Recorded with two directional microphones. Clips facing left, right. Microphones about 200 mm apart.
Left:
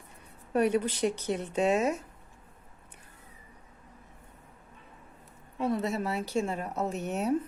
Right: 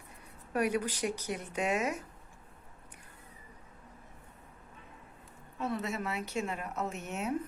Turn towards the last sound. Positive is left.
turn(degrees=35)  # may be behind; listen again after turning